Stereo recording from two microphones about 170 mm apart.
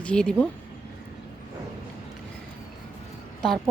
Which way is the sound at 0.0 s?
5° left (ahead or behind).